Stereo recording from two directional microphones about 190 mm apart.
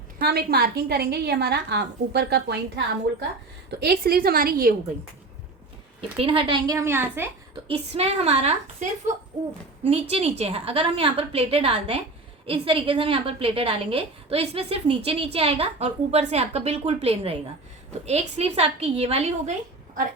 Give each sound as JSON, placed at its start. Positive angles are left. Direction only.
{"t": 0.2, "sound": "a woman's voice", "side_deg": -55}
{"t": 6.0, "sound": "a woman's voice", "side_deg": -30}
{"t": 7.9, "sound": "a woman's voice", "side_deg": -30}